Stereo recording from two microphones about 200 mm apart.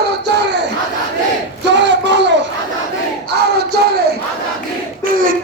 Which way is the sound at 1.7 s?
60° right (ahead or behind).